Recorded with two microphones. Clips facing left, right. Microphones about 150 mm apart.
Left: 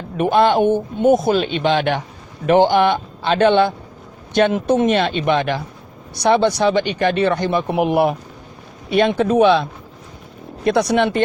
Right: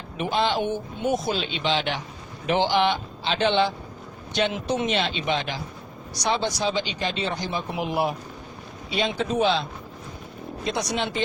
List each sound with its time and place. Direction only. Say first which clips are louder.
0.2 s speech: left 10 dB; 55° left (ahead or behind)